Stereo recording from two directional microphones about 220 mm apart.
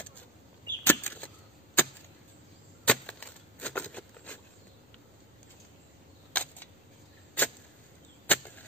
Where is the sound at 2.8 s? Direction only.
5° left (ahead or behind).